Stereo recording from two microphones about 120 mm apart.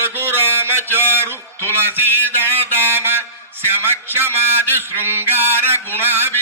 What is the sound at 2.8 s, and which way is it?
A man's voice, 20° right (ahead or behind).